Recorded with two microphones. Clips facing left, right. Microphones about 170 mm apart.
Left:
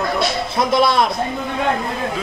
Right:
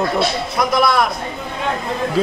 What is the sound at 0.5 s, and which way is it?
Speech, 25° left (ahead or behind).